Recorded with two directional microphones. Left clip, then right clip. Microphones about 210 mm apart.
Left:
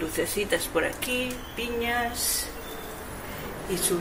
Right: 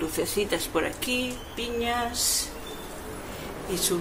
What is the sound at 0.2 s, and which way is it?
Speech, 15° right (ahead or behind).